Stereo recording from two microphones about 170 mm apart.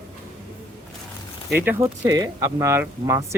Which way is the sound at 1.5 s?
10° right (ahead or behind).